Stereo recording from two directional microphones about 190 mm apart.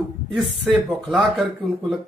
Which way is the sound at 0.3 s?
Centre (ahead or behind).